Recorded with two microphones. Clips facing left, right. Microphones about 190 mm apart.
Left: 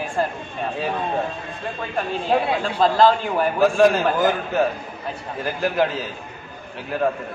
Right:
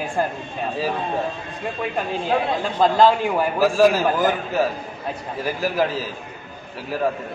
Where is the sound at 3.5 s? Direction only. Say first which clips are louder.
Left 1 dB; 5° right (ahead or behind).